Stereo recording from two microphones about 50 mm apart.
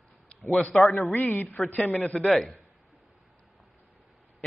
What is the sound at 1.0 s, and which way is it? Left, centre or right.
A man's voice, left.